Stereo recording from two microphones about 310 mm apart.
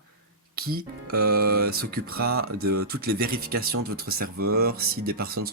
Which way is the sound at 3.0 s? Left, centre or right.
Right.